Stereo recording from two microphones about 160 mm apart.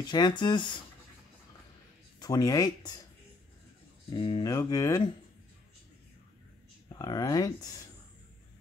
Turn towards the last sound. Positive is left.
turn(degrees=20)  # may be behind; listen again after turning